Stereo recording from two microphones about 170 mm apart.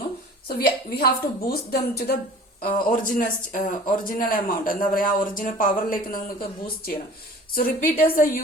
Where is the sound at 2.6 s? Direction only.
50° left (ahead or behind).